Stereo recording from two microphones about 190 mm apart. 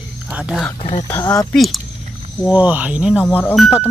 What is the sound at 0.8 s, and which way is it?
Speech, 25° left (ahead or behind).